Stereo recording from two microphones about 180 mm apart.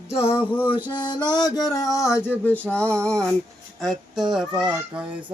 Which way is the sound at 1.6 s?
20° left (ahead or behind).